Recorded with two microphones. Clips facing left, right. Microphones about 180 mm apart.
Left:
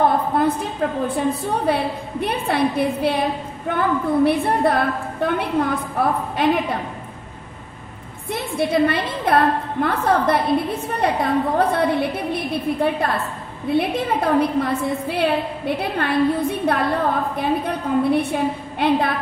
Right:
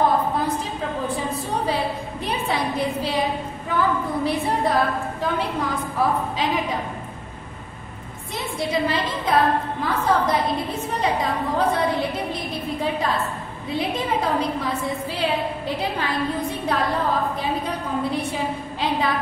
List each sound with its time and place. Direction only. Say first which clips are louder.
0.3 s a sound: left 6 dB; 60° left (ahead or behind)
1.0 s a woman's voice: left 5 dB; 60° left (ahead or behind)
8.3 s a woman's voice: left 5 dB; 55° left (ahead or behind)